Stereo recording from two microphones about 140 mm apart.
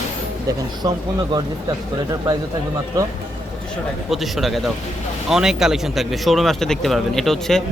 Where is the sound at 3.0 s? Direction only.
25° right (ahead or behind).